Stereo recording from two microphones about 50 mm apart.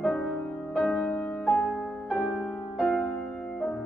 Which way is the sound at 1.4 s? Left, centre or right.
Centre.